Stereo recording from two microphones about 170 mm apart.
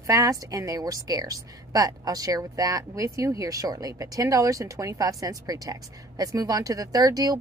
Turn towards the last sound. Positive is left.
turn(degrees=-20)  # may be behind; listen again after turning